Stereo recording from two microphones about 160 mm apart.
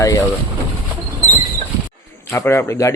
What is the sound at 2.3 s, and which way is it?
Speech, 15° left (ahead or behind).